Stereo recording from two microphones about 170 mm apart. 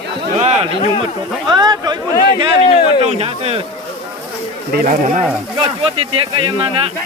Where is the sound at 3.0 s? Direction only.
35° right (ahead or behind).